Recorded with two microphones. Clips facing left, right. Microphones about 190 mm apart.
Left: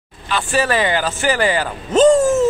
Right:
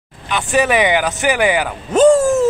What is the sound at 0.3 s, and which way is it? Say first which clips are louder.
Speech: right 3 dB; 15° right (ahead or behind).